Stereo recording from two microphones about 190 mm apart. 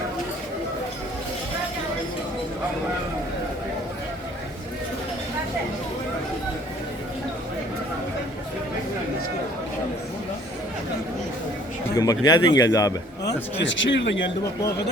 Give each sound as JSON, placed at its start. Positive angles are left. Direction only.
{"t": 11.9, "sound": "a man's voice", "side_deg": 20}
{"t": 13.6, "sound": "speech", "side_deg": 75}